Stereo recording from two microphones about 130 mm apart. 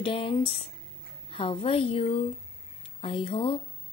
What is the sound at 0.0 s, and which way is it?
Speech, 45° left (ahead or behind).